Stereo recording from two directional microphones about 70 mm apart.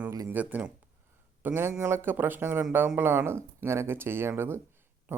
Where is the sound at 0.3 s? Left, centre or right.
Right.